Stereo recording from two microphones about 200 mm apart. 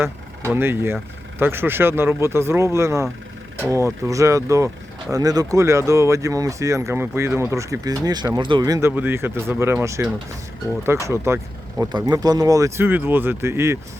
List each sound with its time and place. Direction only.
0.5 s speech: 10° right (ahead or behind)